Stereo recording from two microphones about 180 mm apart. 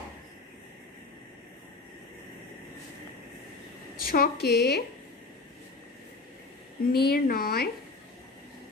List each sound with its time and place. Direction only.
4.1 s speech: 60° left (ahead or behind)
6.8 s speech: 60° left (ahead or behind)